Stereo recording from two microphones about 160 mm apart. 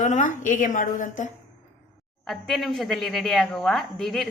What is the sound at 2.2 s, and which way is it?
A woman's voice, centre (ahead or behind).